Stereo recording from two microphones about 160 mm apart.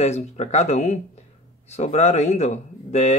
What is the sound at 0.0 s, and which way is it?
Speech, 40° left (ahead or behind).